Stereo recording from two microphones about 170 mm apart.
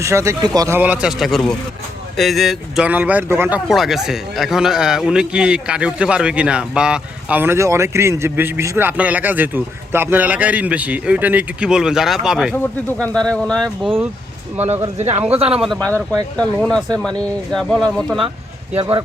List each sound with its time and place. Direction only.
0.0 s speech: 15° right (ahead or behind)
0.8 s a man's voice: 5° right (ahead or behind)
3.7 s a man's voice: centre (ahead or behind)
14.6 s speech: 40° right (ahead or behind)
15.4 s speech: 5° right (ahead or behind)
18.8 s speech: 30° right (ahead or behind)